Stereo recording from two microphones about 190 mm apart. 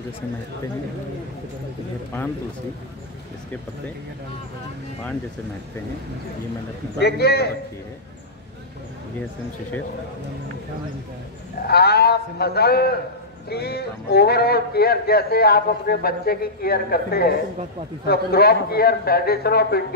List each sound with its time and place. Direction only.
7.0 s speech: 55° left (ahead or behind)
11.6 s a man's voice: 55° left (ahead or behind)